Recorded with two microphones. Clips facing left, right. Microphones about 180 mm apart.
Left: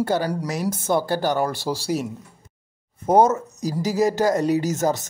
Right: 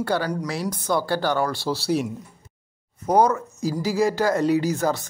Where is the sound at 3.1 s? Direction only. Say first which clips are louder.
Left 2 dB; 25° left (ahead or behind).